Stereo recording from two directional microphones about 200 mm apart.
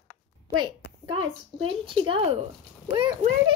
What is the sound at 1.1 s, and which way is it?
A child's voice, 25° right (ahead or behind).